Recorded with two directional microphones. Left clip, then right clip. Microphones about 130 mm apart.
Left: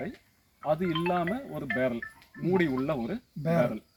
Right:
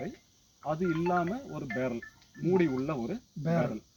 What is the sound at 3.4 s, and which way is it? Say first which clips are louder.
Speech: left 4 dB; 20° left (ahead or behind).